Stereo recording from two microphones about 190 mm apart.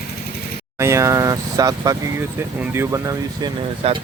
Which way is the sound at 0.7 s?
15° right (ahead or behind).